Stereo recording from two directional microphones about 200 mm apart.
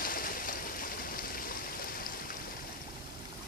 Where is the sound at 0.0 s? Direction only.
45° left (ahead or behind).